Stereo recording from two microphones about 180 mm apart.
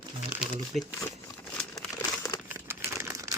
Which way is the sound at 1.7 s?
20° left (ahead or behind).